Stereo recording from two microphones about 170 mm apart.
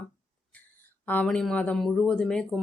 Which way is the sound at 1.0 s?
10° left (ahead or behind).